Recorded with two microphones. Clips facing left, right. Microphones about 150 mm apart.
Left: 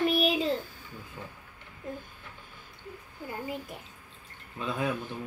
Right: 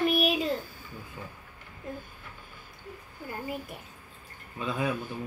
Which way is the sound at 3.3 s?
25° left (ahead or behind).